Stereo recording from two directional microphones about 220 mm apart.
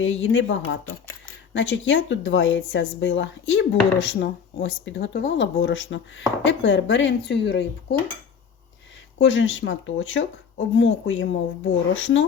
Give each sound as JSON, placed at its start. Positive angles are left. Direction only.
{"t": 0.0, "sound": "speech", "side_deg": 60}
{"t": 9.1, "sound": "speech", "side_deg": 55}